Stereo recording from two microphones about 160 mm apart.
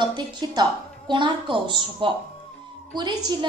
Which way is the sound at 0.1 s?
25° right (ahead or behind).